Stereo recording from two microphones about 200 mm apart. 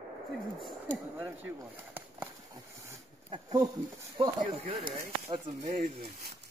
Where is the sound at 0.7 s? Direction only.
10° right (ahead or behind).